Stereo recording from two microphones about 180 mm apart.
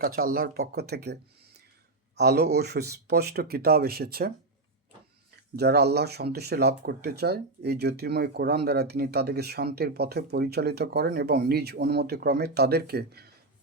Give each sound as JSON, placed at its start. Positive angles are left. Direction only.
{"t": 0.0, "sound": "speech", "side_deg": -55}
{"t": 5.5, "sound": "speech", "side_deg": -65}